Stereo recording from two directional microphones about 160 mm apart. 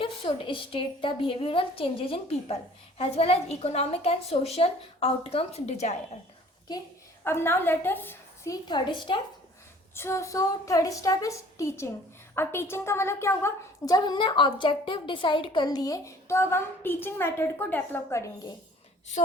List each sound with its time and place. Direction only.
0.0 s a woman's voice: 35° left (ahead or behind)
7.3 s a woman's voice: 15° left (ahead or behind)
8.6 s a woman's voice: 30° left (ahead or behind)
9.9 s a woman's voice: 15° left (ahead or behind)